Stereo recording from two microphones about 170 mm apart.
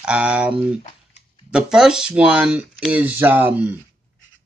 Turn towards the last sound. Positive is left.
turn(degrees=-10)  # may be behind; listen again after turning